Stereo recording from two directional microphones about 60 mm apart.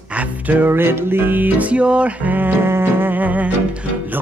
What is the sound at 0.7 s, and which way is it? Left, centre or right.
Music, right.